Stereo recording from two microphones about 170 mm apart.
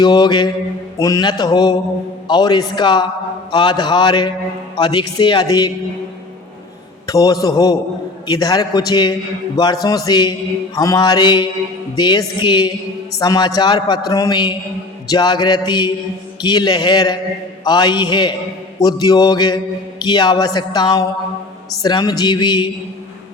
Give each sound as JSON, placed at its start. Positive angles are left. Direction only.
{"t": 0.0, "sound": "a man's voice", "side_deg": 25}
{"t": 7.1, "sound": "a man's voice", "side_deg": 20}